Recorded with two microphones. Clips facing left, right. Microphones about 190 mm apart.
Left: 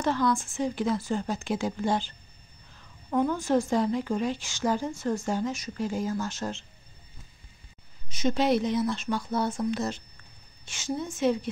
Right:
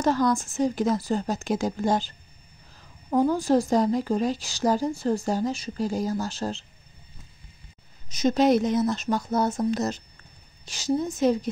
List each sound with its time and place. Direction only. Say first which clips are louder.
0.0 s a woman's voice: right 3 dB; 40° right (ahead or behind)
8.1 s a woman's voice: right 4 dB; 40° right (ahead or behind)